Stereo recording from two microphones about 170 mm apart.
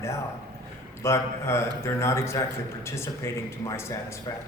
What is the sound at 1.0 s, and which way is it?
Speech, 15° left (ahead or behind).